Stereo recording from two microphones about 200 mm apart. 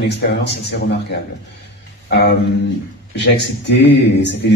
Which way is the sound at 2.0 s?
55° left (ahead or behind).